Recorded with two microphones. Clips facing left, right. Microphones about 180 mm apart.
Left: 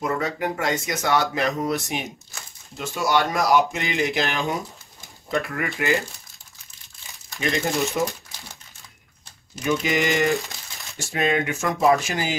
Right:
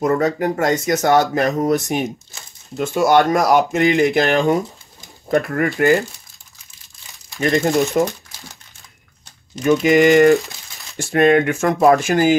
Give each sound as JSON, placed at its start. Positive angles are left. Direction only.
{"t": 0.0, "sound": "speech", "side_deg": -45}
{"t": 7.3, "sound": "speech", "side_deg": -45}
{"t": 9.6, "sound": "speech", "side_deg": -50}